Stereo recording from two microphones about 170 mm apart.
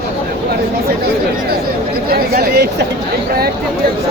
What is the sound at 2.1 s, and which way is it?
Speech, 65° right (ahead or behind).